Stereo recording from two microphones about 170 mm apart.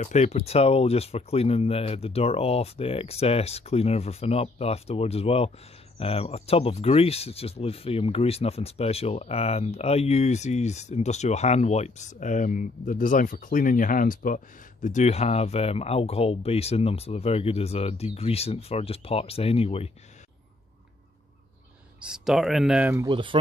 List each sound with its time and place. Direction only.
0.0 s speech: 40° left (ahead or behind)
22.0 s speech: 5° right (ahead or behind)
23.0 s speech: 30° right (ahead or behind)